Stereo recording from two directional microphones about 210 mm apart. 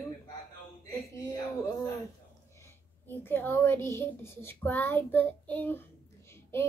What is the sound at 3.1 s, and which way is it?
A child's voice, 10° left (ahead or behind).